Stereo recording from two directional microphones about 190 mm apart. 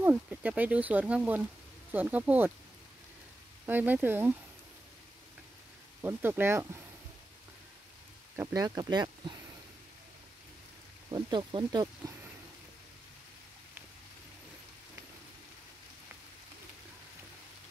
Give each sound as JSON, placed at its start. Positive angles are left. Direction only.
{"t": 0.0, "sound": "speech", "side_deg": -10}
{"t": 3.6, "sound": "speech", "side_deg": -10}
{"t": 6.0, "sound": "speech", "side_deg": -10}
{"t": 8.4, "sound": "speech", "side_deg": -20}
{"t": 11.1, "sound": "speech", "side_deg": -25}